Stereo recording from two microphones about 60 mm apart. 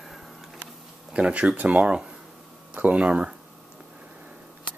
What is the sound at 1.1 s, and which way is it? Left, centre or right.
Speech, centre.